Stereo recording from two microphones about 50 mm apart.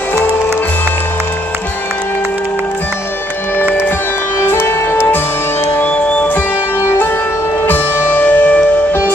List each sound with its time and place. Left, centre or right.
4.5 s music: left
5.9 s music: centre
7.6 s music: left